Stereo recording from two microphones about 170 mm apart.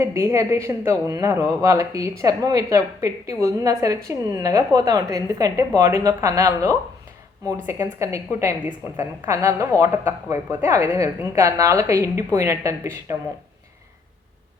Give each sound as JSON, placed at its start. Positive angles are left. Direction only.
{"t": 0.0, "sound": "a woman's voice", "side_deg": -15}